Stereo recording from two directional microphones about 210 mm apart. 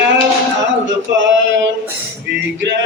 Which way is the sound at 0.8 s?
60° right (ahead or behind).